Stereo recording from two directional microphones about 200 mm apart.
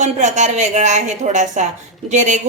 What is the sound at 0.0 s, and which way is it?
A woman's voice, 35° right (ahead or behind).